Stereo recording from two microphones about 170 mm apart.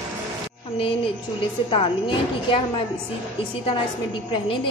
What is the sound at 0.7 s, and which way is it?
A woman's voice, 30° left (ahead or behind).